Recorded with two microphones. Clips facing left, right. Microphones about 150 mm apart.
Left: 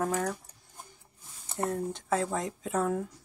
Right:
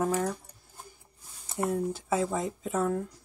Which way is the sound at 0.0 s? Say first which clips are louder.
Right 2 dB; 5° right (ahead or behind).